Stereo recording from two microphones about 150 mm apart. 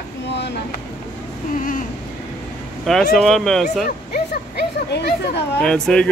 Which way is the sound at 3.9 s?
85° left.